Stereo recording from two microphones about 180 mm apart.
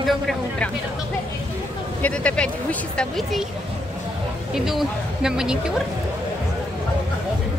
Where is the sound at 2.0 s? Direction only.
5° left (ahead or behind).